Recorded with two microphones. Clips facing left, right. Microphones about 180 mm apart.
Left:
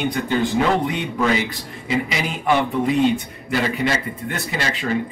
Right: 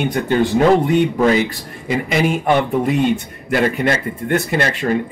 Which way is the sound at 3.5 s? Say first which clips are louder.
Right 4 dB; 55° right (ahead or behind).